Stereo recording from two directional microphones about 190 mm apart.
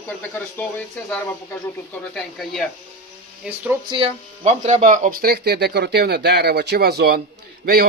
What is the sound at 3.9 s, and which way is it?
Speech, 30° right (ahead or behind).